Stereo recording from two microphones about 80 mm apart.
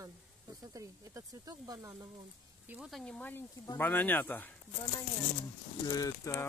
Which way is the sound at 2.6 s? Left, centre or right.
Centre.